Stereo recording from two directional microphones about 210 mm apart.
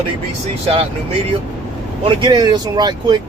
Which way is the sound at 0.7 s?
25° right (ahead or behind).